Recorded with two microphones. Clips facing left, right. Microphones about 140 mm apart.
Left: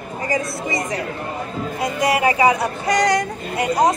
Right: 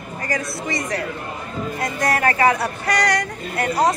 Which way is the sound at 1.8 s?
10° left (ahead or behind).